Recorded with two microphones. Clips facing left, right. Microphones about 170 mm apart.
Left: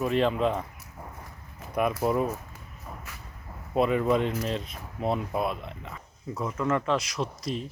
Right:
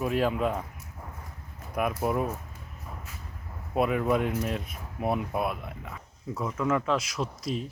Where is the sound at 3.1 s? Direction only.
80° left.